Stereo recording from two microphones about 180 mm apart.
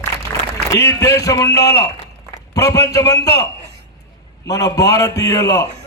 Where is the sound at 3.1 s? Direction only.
65° left (ahead or behind).